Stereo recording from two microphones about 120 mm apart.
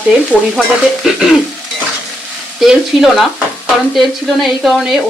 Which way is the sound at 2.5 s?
5° right (ahead or behind).